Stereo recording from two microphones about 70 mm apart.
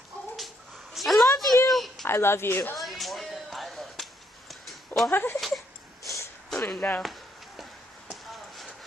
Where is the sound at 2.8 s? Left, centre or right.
Centre.